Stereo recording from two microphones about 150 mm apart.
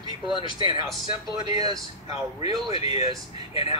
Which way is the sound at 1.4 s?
25° right (ahead or behind).